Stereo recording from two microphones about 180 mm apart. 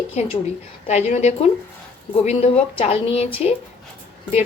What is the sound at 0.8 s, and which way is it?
A woman's voice, 40° left (ahead or behind).